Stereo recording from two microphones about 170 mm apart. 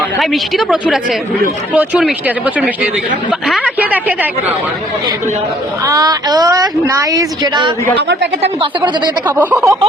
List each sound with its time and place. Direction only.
0.2 s a woman's voice: centre (ahead or behind)
5.8 s speech: 20° right (ahead or behind)
8.0 s a woman's voice: 90° right
9.2 s speech: 10° right (ahead or behind)